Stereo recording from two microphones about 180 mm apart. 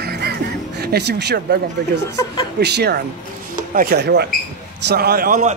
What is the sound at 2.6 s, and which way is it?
A man's voice, 65° right (ahead or behind).